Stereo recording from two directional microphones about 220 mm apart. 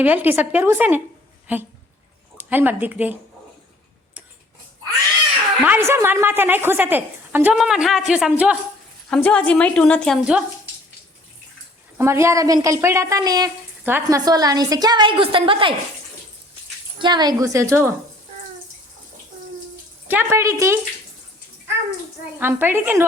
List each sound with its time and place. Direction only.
0.0 s a woman's voice: 10° right (ahead or behind)
5.6 s a woman's voice: 10° right (ahead or behind)
11.9 s a woman's voice: 10° right (ahead or behind)
17.0 s a woman's voice: 20° right (ahead or behind)
20.1 s a woman's voice: 10° right (ahead or behind)
22.4 s a woman's voice: 10° right (ahead or behind)